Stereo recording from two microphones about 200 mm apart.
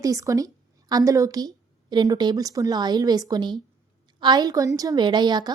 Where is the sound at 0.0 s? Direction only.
15° right (ahead or behind).